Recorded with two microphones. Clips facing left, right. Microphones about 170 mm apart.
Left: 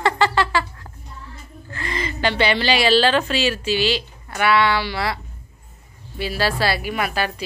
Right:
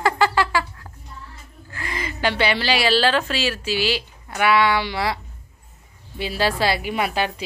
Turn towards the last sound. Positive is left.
turn(degrees=-20)  # may be behind; listen again after turning